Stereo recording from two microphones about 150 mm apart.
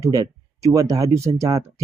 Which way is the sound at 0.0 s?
20° right (ahead or behind).